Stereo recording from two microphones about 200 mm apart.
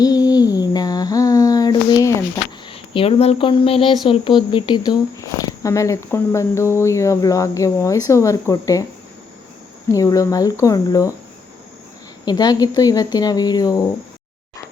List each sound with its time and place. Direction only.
0.0 s a sound: 20° left (ahead or behind)
2.9 s speech: 30° left (ahead or behind)
9.9 s speech: 15° left (ahead or behind)
12.2 s speech: 20° left (ahead or behind)